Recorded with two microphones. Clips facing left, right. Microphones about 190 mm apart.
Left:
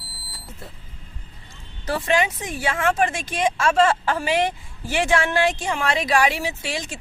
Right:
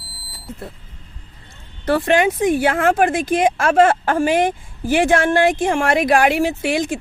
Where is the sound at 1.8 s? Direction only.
55° right (ahead or behind).